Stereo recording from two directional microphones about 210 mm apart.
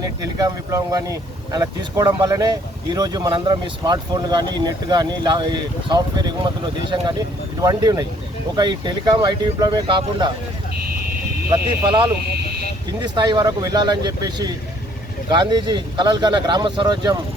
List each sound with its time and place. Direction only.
0.0 s speech: 15° right (ahead or behind)
13.0 s speech: 20° right (ahead or behind)